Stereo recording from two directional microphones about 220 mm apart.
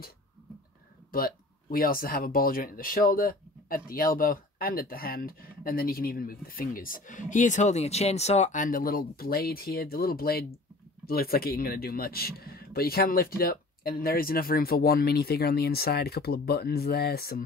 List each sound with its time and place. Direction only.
1.1 s speech: 40° left (ahead or behind)